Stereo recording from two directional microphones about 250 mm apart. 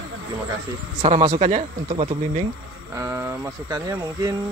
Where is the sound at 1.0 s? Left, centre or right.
Right.